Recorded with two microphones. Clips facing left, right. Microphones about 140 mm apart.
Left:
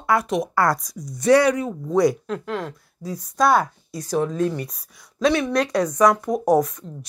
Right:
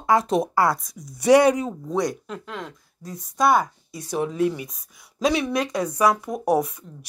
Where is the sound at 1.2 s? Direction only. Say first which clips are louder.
Right 1 dB; 15° right (ahead or behind).